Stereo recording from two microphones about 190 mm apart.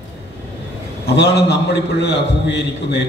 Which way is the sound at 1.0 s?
60° left (ahead or behind).